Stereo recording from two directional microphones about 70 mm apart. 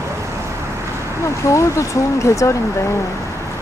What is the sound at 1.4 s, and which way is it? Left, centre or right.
Speech, left.